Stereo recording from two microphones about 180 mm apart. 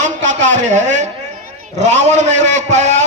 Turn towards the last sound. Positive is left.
turn(degrees=-40)  # may be behind; listen again after turning